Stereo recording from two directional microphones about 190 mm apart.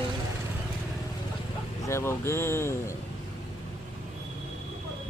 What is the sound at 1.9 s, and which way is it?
Speech, 15° left (ahead or behind).